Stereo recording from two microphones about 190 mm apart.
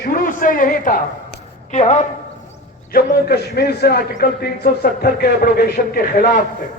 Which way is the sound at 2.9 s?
55° left (ahead or behind).